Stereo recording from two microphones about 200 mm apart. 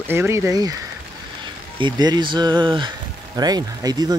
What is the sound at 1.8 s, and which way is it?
Speech, 20° right (ahead or behind).